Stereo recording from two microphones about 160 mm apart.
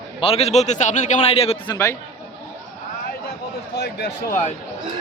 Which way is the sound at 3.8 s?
90° left.